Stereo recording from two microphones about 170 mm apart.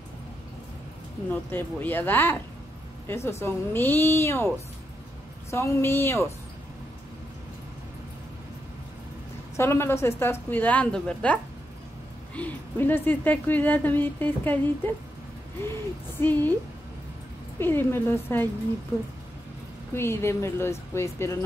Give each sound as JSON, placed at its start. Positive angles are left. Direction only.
{"t": 1.3, "sound": "speech", "side_deg": 10}
{"t": 5.5, "sound": "speech", "side_deg": 15}
{"t": 9.6, "sound": "speech", "side_deg": 15}
{"t": 12.4, "sound": "speech", "side_deg": 10}
{"t": 15.7, "sound": "speech", "side_deg": 10}
{"t": 17.6, "sound": "speech", "side_deg": 10}
{"t": 19.9, "sound": "speech", "side_deg": 15}